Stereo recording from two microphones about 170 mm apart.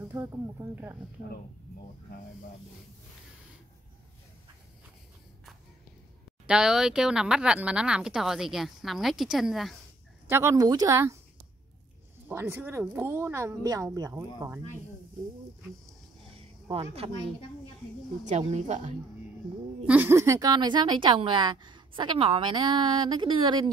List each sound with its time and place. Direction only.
0.1 s speech: 15° right (ahead or behind)
6.4 s speech: 5° right (ahead or behind)
10.2 s speech: 15° right (ahead or behind)
12.3 s speech: 15° right (ahead or behind)
17.0 s speech: 30° right (ahead or behind)
18.2 s speech: 40° right (ahead or behind)
19.9 s speech: 10° right (ahead or behind); by 23.7 s 30° right (ahead or behind)